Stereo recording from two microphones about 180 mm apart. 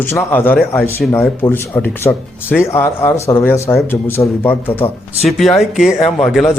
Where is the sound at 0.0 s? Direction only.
10° left (ahead or behind).